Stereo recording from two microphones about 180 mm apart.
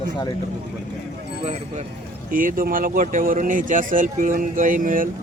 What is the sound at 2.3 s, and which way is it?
Speech, 50° right (ahead or behind).